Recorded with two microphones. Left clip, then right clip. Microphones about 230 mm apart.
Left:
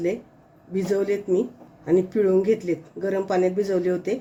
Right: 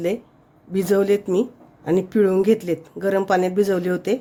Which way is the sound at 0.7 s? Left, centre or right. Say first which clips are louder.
Right 5 dB; right.